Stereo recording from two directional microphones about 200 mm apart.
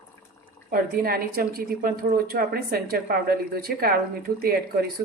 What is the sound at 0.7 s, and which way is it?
A woman's voice, 45° right (ahead or behind).